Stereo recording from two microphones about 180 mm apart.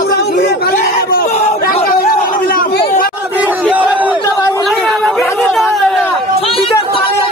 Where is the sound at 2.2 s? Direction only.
50° left (ahead or behind).